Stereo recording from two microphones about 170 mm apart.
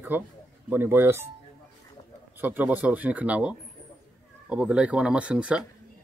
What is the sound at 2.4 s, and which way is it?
A man's voice, 10° right (ahead or behind).